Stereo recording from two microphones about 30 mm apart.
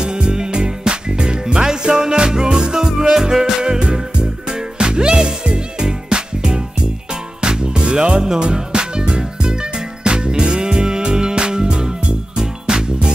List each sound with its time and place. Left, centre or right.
0.0 s music: right
3.6 s music: right